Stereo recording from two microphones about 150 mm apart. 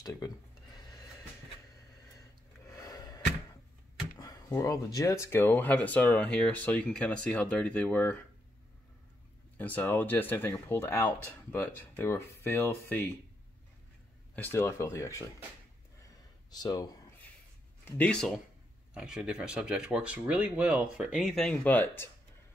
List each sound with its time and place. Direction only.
2.6 s a sound: 20° left (ahead or behind)
4.2 s speech: 25° left (ahead or behind)
9.6 s speech: 10° left (ahead or behind)
14.3 s speech: 15° left (ahead or behind)
16.4 s speech: 25° left (ahead or behind)
17.8 s speech: 10° left (ahead or behind)
18.9 s speech: 5° right (ahead or behind); by 22.1 s 15° left (ahead or behind)